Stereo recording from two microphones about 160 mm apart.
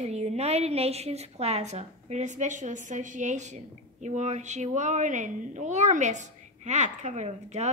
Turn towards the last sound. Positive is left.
turn(degrees=-45)  # may be behind; listen again after turning